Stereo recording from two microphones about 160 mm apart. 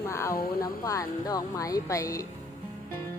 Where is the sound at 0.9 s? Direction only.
20° left (ahead or behind).